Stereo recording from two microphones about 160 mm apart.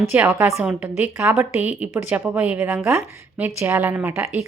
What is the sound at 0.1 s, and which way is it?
A woman's voice, 10° right (ahead or behind).